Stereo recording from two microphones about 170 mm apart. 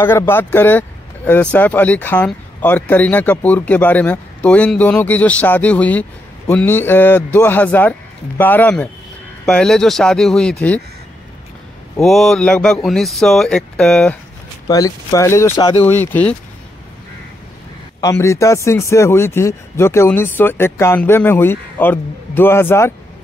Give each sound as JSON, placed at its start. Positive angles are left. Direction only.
{"t": 0.0, "sound": "speech", "side_deg": 15}
{"t": 12.0, "sound": "speech", "side_deg": 0}
{"t": 14.7, "sound": "speech", "side_deg": 20}
{"t": 15.6, "sound": "speech", "side_deg": 30}
{"t": 15.9, "sound": "speech", "side_deg": 10}
{"t": 18.0, "sound": "speech", "side_deg": 15}